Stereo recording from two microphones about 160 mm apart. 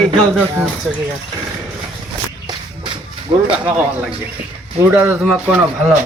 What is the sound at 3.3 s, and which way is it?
Speech, 35° right (ahead or behind).